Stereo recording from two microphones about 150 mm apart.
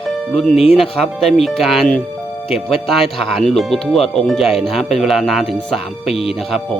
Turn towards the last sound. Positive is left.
turn(degrees=0)  # may be behind; listen again after turning